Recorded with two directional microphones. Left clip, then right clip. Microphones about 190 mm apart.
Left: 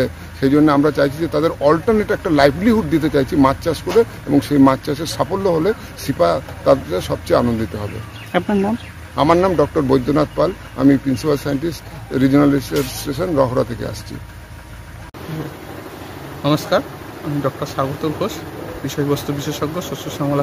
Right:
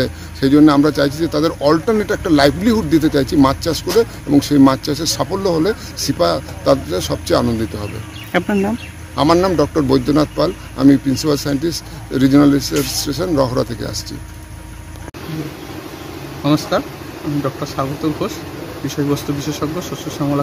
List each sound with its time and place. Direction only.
0.0 s a man's voice: 5° left (ahead or behind)
16.4 s speech: 15° left (ahead or behind)